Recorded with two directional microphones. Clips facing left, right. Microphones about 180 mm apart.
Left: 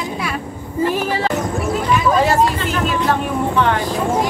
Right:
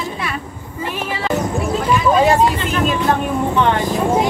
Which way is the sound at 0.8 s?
40° left (ahead or behind).